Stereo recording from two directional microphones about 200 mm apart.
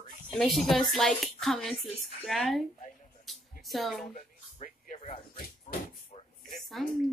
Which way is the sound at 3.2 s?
Centre (ahead or behind).